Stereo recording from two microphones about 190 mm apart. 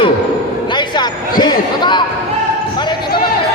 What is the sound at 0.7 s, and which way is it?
Basketball bounce, 25° left (ahead or behind).